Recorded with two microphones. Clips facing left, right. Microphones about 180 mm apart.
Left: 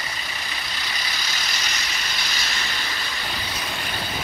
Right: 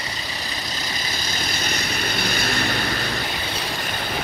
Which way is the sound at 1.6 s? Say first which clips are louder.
Right 6 dB; 55° right (ahead or behind).